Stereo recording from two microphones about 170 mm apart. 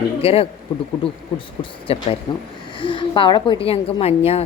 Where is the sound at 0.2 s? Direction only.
35° left (ahead or behind).